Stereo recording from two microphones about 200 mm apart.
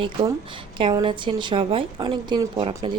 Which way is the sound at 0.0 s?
25° right (ahead or behind).